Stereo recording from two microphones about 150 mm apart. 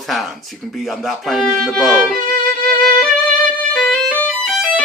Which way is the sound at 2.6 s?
5° left (ahead or behind).